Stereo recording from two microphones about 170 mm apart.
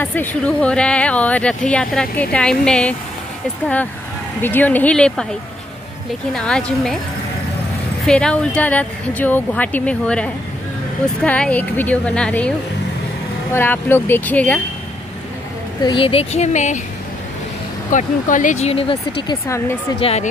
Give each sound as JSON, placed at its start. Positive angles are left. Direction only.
{"t": 0.0, "sound": "speech", "side_deg": 10}
{"t": 6.3, "sound": "a woman's voice", "side_deg": 5}
{"t": 8.0, "sound": "speech", "side_deg": 5}
{"t": 15.8, "sound": "speech", "side_deg": 30}
{"t": 17.9, "sound": "speech", "side_deg": 50}
{"t": 19.4, "sound": "speech", "side_deg": 15}
{"t": 20.0, "sound": "speech", "side_deg": 35}